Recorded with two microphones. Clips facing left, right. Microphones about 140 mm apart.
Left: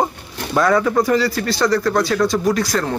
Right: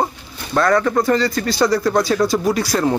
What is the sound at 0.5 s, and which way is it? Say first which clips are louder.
Speech: even; 5° left (ahead or behind).